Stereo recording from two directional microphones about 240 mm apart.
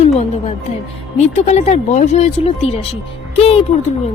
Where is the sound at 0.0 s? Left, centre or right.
Left.